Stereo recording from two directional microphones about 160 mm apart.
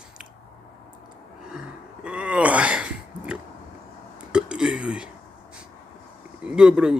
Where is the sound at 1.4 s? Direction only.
5° right (ahead or behind).